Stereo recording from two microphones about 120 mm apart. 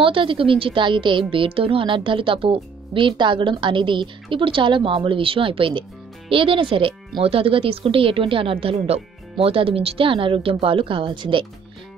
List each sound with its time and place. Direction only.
0.0 s a woman's voice: 45° right (ahead or behind)